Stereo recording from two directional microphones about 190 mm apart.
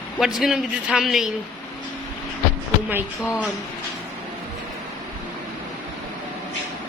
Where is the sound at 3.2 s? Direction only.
10° left (ahead or behind).